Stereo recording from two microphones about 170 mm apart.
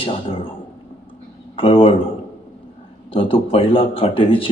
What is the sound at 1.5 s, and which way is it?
Speech, 30° left (ahead or behind).